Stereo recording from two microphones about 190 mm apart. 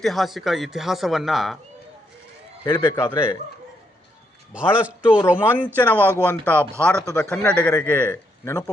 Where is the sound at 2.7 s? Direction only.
20° left (ahead or behind).